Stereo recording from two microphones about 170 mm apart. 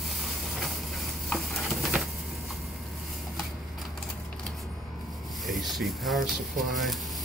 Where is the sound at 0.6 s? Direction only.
Centre (ahead or behind).